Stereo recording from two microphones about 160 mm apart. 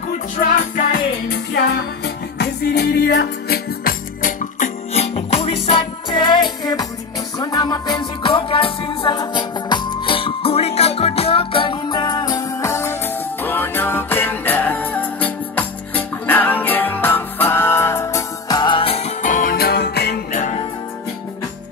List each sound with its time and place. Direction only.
0.4 s music: 60° left (ahead or behind)
1.5 s music: 90° left; by 19.1 s 40° left (ahead or behind)
19.2 s music: 55° left (ahead or behind); by 20.2 s 90° left